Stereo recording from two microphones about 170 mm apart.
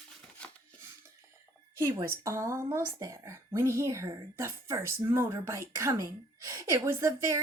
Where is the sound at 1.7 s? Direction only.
15° right (ahead or behind).